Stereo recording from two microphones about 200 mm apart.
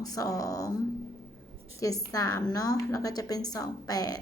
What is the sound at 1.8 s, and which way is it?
A woman's voice, 15° left (ahead or behind).